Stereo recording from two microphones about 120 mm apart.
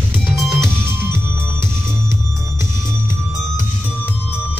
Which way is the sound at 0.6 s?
20° right (ahead or behind).